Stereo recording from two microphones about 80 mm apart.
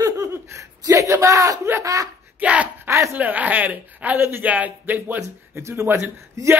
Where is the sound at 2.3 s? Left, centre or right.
Centre.